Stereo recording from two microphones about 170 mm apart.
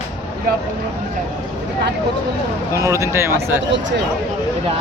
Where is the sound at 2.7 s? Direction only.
20° right (ahead or behind).